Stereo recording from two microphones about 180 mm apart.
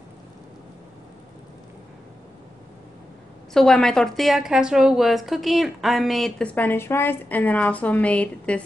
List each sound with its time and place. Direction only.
3.5 s a woman's voice: 5° left (ahead or behind)